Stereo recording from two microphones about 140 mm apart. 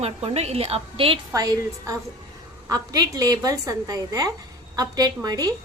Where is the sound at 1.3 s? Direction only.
25° right (ahead or behind).